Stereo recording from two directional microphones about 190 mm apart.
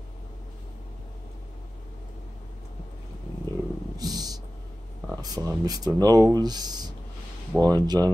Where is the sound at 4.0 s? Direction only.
20° right (ahead or behind).